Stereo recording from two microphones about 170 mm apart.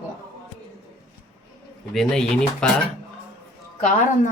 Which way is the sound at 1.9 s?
5° left (ahead or behind).